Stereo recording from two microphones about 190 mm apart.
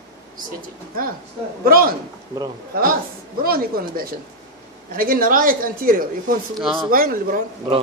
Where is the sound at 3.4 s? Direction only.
50° right (ahead or behind).